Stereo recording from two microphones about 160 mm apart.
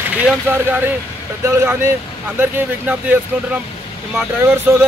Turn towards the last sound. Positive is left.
turn(degrees=-15)  # may be behind; listen again after turning